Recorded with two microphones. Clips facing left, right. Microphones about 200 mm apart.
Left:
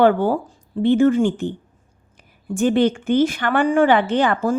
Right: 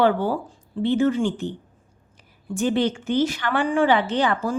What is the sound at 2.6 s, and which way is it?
A woman's voice, 55° left (ahead or behind).